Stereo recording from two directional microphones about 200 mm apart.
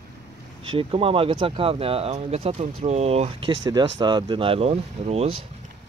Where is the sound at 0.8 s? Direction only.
25° right (ahead or behind).